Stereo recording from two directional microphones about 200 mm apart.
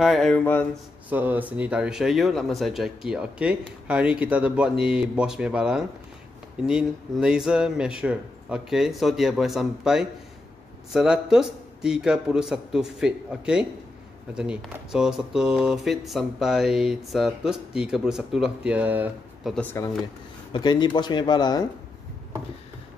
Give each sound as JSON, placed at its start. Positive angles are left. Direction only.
{"t": 0.0, "sound": "speech", "side_deg": 0}
{"t": 1.1, "sound": "speech", "side_deg": -10}
{"t": 19.5, "sound": "speech", "side_deg": 10}
{"t": 20.5, "sound": "speech", "side_deg": 20}